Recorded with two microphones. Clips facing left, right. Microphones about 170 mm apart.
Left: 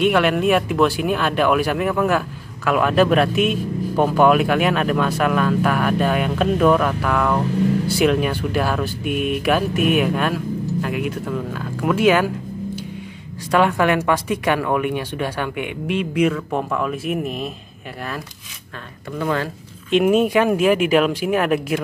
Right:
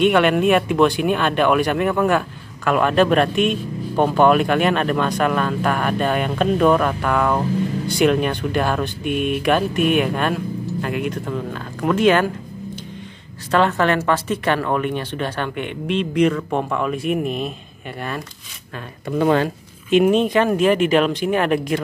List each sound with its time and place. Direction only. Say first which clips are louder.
0.0 s speech: right 2 dB; centre (ahead or behind)
13.5 s speech: even; 10° left (ahead or behind)
19.1 s speech: right 6 dB; 25° right (ahead or behind)
19.9 s speech: right 1 dB; 5° left (ahead or behind)